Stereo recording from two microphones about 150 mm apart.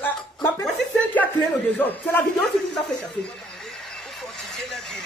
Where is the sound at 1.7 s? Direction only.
10° left (ahead or behind).